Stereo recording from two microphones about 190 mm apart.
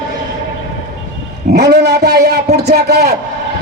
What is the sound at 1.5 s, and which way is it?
A man's voice, 60° right (ahead or behind).